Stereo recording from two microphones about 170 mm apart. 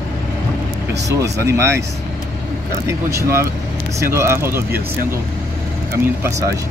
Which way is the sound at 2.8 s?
15° right (ahead or behind).